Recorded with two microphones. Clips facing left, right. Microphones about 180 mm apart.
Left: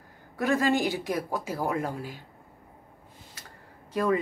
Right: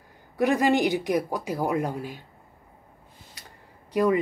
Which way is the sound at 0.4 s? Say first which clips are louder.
Right 3 dB; 15° right (ahead or behind).